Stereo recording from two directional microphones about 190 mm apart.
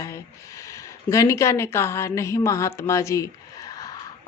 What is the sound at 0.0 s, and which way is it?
Speech, 15° left (ahead or behind).